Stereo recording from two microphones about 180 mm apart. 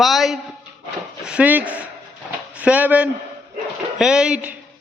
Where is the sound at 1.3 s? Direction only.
10° right (ahead or behind).